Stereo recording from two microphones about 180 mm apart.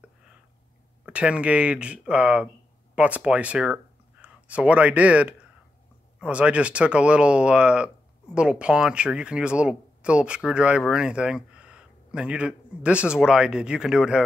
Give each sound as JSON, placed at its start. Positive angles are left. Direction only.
{"t": 1.0, "sound": "speech", "side_deg": -5}